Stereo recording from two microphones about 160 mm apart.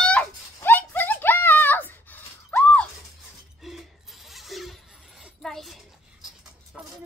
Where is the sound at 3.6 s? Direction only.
Centre (ahead or behind).